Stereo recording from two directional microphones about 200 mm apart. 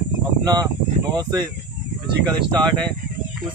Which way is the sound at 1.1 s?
20° right (ahead or behind).